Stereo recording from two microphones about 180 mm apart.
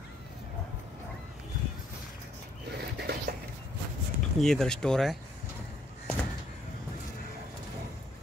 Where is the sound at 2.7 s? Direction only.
65° right (ahead or behind).